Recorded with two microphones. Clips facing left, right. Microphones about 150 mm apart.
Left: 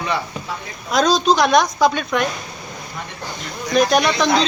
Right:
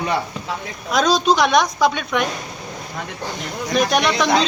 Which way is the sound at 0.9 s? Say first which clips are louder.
Left 1 dB; centre (ahead or behind).